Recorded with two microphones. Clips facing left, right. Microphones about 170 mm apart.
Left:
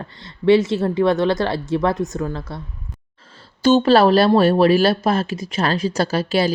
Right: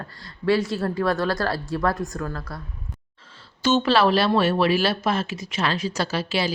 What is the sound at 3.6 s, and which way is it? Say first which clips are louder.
Speech: left 6 dB; 35° left (ahead or behind).